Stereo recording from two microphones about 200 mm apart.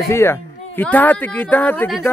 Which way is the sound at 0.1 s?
10° left (ahead or behind).